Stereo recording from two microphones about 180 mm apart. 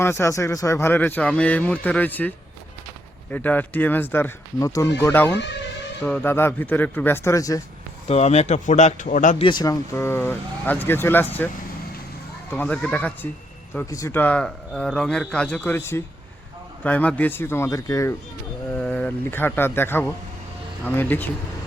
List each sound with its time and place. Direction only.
0.0 s a man's voice: 15° left (ahead or behind)
3.3 s a man's voice: 10° left (ahead or behind)
8.0 s speech: 35° left (ahead or behind)
9.4 s a man's voice: 25° left (ahead or behind)
12.5 s a man's voice: 10° left (ahead or behind)
18.7 s a man's voice: 5° left (ahead or behind)